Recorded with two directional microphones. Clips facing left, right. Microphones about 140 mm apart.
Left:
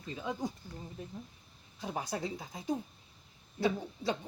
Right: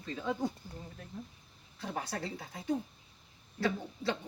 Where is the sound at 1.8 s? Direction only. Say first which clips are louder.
Left 1 dB; 15° left (ahead or behind).